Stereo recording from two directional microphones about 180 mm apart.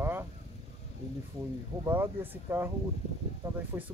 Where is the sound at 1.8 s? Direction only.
15° right (ahead or behind).